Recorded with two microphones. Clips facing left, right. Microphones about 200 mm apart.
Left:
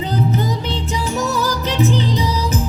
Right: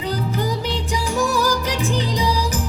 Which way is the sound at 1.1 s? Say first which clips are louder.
Right 2 dB; 20° left (ahead or behind).